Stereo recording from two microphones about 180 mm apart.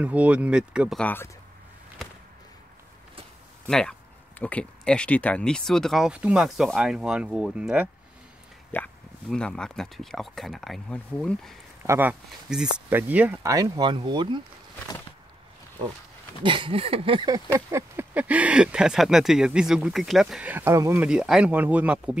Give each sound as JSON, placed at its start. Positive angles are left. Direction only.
{"t": 0.0, "sound": "speech", "side_deg": -5}
{"t": 1.0, "sound": "speech", "side_deg": 10}
{"t": 3.6, "sound": "speech", "side_deg": 5}
{"t": 8.7, "sound": "speech", "side_deg": 5}
{"t": 11.8, "sound": "speech", "side_deg": -15}
{"t": 16.4, "sound": "speech", "side_deg": -30}
{"t": 17.5, "sound": "speech", "side_deg": -15}
{"t": 21.1, "sound": "speech", "side_deg": -5}